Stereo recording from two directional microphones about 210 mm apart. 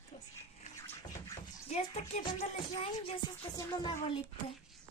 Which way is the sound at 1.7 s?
30° left (ahead or behind).